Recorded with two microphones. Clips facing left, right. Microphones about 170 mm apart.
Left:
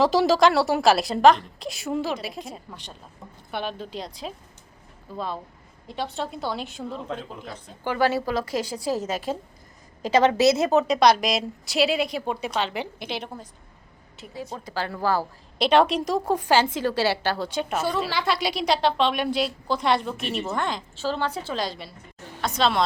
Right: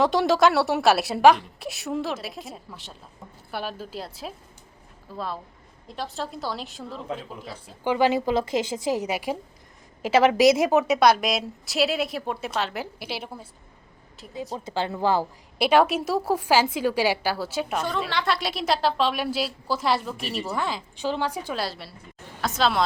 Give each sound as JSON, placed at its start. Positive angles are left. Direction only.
{"t": 0.0, "sound": "a woman's voice", "side_deg": 0}
{"t": 7.9, "sound": "a woman's voice", "side_deg": -15}
{"t": 14.6, "sound": "a woman's voice", "side_deg": -20}
{"t": 15.5, "sound": "a woman's voice", "side_deg": -10}
{"t": 20.9, "sound": "a woman's voice", "side_deg": -15}